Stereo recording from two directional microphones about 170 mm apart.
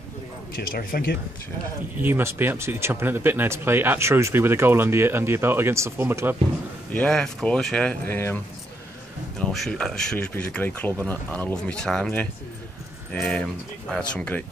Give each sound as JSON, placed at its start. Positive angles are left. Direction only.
{"t": 0.6, "sound": "speech", "side_deg": 60}
{"t": 2.0, "sound": "speech", "side_deg": -10}
{"t": 6.9, "sound": "speech", "side_deg": 5}
{"t": 9.4, "sound": "speech", "side_deg": 5}